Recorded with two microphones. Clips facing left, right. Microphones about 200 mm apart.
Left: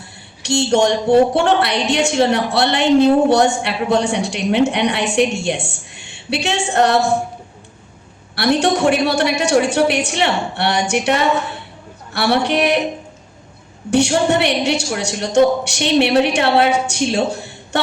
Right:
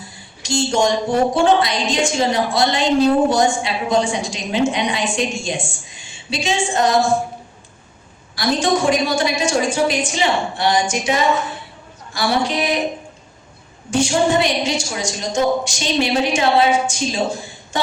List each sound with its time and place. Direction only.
0.0 s a sound: 65° left (ahead or behind)
1.3 s a woman's voice: 65° left (ahead or behind)
8.4 s a woman's voice: 65° left (ahead or behind)
13.9 s a woman's voice: 65° left (ahead or behind)